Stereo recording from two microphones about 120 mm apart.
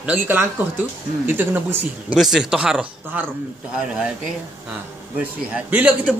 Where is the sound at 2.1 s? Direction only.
5° right (ahead or behind).